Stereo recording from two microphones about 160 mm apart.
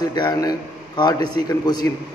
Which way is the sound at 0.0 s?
25° left (ahead or behind).